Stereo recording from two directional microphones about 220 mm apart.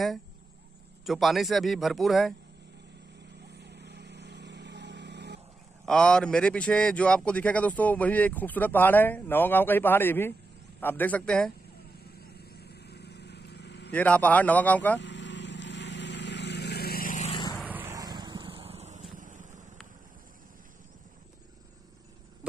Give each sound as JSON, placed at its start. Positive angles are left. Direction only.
{"t": 1.0, "sound": "speech", "side_deg": 0}
{"t": 3.5, "sound": "vehicle", "side_deg": -50}
{"t": 5.9, "sound": "speech", "side_deg": 5}
{"t": 12.4, "sound": "vehicle", "side_deg": 45}
{"t": 13.9, "sound": "speech", "side_deg": 5}
{"t": 15.0, "sound": "vehicle", "side_deg": 55}
{"t": 17.6, "sound": "vehicle", "side_deg": -10}
{"t": 22.4, "sound": "a sound", "side_deg": -5}